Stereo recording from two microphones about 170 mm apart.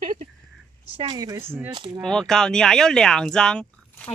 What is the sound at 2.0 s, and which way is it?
Speech, 5° left (ahead or behind).